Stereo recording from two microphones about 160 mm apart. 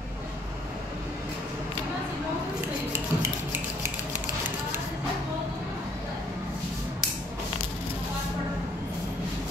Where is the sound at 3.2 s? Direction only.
15° right (ahead or behind).